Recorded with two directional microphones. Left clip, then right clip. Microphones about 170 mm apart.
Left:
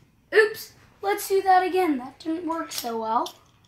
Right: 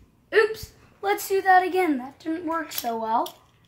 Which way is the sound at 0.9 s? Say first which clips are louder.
Even; 20° right (ahead or behind).